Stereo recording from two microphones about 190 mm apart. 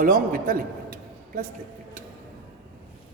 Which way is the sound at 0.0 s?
50° right (ahead or behind).